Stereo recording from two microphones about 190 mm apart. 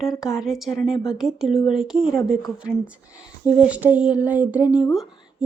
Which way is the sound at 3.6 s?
10° right (ahead or behind).